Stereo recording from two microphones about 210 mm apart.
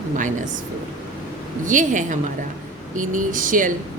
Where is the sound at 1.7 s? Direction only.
40° right (ahead or behind).